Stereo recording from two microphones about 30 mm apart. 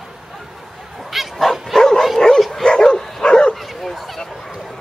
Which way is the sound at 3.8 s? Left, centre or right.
Centre.